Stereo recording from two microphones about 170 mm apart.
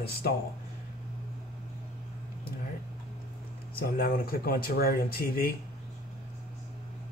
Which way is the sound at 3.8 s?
60° left (ahead or behind).